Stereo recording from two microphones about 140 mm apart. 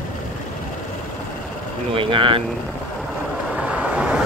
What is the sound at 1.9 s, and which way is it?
Speech, 40° right (ahead or behind).